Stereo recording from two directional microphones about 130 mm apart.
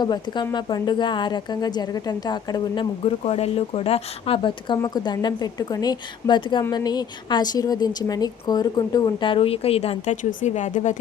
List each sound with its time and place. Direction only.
0.0 s a woman's voice: 35° left (ahead or behind)
3.0 s speech: 50° left (ahead or behind)
4.8 s a woman's voice: 30° left (ahead or behind); by 11.0 s 70° left (ahead or behind)